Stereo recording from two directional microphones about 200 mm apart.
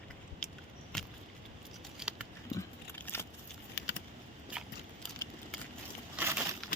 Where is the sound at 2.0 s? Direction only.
5° right (ahead or behind).